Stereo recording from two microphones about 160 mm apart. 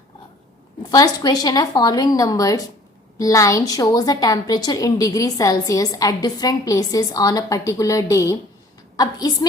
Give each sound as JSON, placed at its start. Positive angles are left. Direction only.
{"t": 0.9, "sound": "a woman's voice", "side_deg": 25}